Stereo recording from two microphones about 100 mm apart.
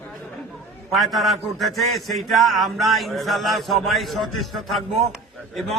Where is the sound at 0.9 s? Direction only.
Centre (ahead or behind).